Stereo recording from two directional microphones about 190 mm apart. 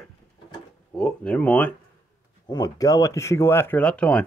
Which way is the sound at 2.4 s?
20° left (ahead or behind).